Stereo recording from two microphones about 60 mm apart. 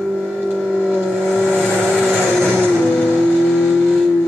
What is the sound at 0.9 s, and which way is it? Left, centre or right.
Vehicle, centre.